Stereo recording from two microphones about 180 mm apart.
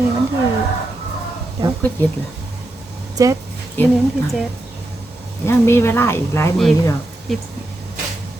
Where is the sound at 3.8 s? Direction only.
10° left (ahead or behind).